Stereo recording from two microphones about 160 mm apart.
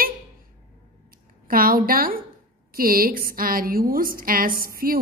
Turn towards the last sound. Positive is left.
turn(degrees=-65)  # may be behind; listen again after turning